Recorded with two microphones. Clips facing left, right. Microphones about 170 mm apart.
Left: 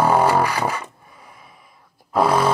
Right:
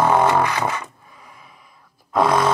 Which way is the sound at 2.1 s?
30° left (ahead or behind).